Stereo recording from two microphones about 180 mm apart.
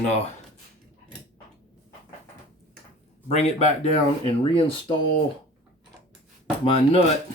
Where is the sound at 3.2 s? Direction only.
35° left (ahead or behind).